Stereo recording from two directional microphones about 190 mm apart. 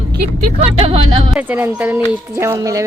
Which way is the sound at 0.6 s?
30° right (ahead or behind).